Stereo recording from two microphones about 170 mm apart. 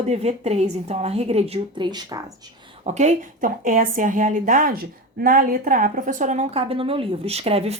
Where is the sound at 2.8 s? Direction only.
45° right (ahead or behind).